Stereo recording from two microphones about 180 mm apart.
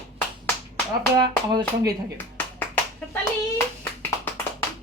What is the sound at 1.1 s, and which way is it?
Speech, 25° right (ahead or behind).